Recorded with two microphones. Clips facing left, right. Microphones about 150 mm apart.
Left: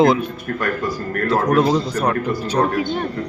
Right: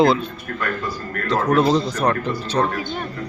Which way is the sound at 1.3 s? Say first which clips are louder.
Left 1 dB; 10° left (ahead or behind).